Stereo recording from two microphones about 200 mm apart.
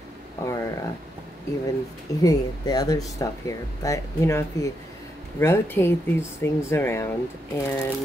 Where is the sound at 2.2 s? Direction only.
20° left (ahead or behind).